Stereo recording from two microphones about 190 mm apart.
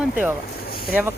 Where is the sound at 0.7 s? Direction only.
50° left (ahead or behind).